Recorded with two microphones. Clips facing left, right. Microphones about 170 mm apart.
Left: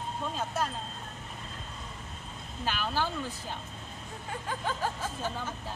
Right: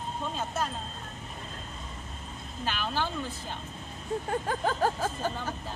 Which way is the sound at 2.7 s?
5° left (ahead or behind).